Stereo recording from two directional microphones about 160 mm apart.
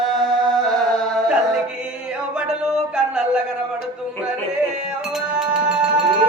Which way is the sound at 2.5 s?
5° right (ahead or behind).